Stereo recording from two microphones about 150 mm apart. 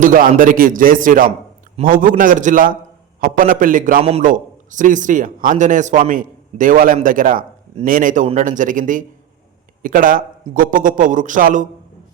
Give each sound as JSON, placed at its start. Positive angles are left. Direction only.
{"t": 0.0, "sound": "a man's voice", "side_deg": -65}